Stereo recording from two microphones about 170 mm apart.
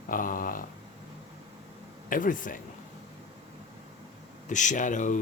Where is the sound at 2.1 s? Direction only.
55° left (ahead or behind).